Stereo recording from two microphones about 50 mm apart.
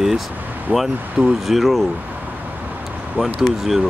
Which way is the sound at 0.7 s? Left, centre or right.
Right.